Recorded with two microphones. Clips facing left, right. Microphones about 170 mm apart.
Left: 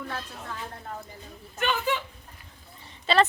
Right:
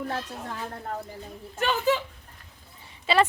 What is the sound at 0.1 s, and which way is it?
Speech, 40° right (ahead or behind).